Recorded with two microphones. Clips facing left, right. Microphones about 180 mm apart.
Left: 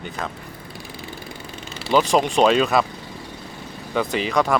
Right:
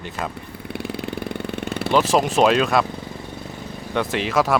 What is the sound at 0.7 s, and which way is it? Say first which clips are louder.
Vehicle: right 11 dB; 65° right (ahead or behind).